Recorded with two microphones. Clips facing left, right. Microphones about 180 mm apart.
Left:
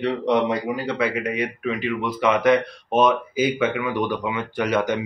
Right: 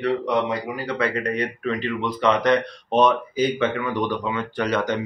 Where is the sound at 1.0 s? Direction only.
5° left (ahead or behind).